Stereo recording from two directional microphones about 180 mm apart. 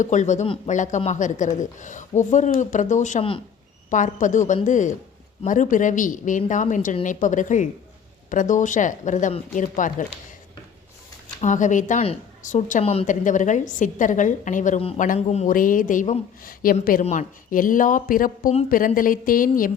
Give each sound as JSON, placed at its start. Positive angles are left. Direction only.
{"t": 0.0, "sound": "speech", "side_deg": 40}
{"t": 0.4, "sound": "speech", "side_deg": 30}
{"t": 0.7, "sound": "a woman's voice", "side_deg": 45}
{"t": 11.3, "sound": "a woman's voice", "side_deg": 45}